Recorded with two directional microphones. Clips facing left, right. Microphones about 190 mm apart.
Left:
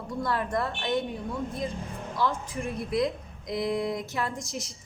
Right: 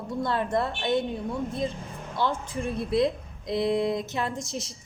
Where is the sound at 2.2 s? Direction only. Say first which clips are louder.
Right 1 dB; 30° right (ahead or behind).